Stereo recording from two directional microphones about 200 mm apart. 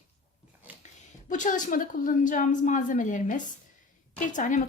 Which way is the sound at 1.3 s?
40° left (ahead or behind).